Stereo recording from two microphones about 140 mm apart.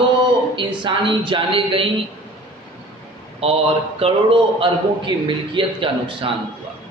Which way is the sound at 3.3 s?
45° right (ahead or behind).